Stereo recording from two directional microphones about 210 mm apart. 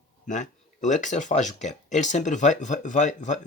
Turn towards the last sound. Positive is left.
turn(degrees=35)  # may be behind; listen again after turning